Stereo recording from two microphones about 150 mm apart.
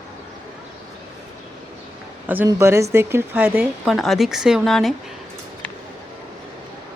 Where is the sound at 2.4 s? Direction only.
20° right (ahead or behind); by 4.9 s centre (ahead or behind).